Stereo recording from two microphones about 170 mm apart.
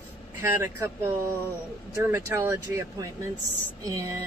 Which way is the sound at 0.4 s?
15° right (ahead or behind).